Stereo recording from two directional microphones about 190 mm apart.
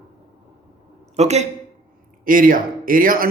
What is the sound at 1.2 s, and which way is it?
Speech, 35° right (ahead or behind).